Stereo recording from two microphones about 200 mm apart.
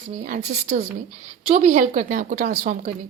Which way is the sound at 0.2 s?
35° right (ahead or behind).